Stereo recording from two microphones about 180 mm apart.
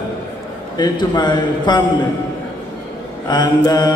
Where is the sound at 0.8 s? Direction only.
25° left (ahead or behind).